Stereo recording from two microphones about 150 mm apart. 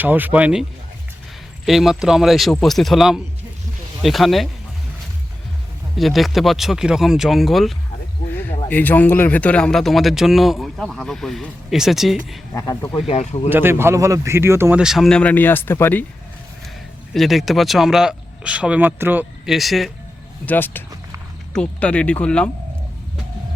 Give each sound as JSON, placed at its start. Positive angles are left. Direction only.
{"t": 0.0, "sound": "speech", "side_deg": -10}
{"t": 1.6, "sound": "speech", "side_deg": 0}
{"t": 6.0, "sound": "speech", "side_deg": 0}
{"t": 8.6, "sound": "speech", "side_deg": 10}
{"t": 12.5, "sound": "speech", "side_deg": 15}
{"t": 13.1, "sound": "speech", "side_deg": 45}
{"t": 13.5, "sound": "speech", "side_deg": -15}
{"t": 14.8, "sound": "speech", "side_deg": 0}
{"t": 17.2, "sound": "speech", "side_deg": 0}
{"t": 19.5, "sound": "speech", "side_deg": 0}
{"t": 20.4, "sound": "speech", "side_deg": 10}